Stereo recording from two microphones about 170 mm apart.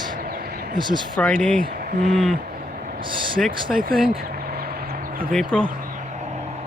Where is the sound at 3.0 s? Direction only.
30° right (ahead or behind).